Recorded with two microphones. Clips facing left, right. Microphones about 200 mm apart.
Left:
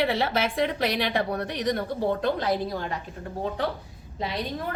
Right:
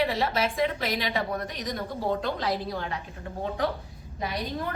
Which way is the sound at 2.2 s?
50° left (ahead or behind).